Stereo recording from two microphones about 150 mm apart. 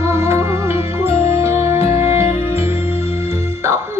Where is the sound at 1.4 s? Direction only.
15° right (ahead or behind).